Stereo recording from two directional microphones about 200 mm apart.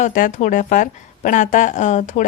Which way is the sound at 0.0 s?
40° left (ahead or behind).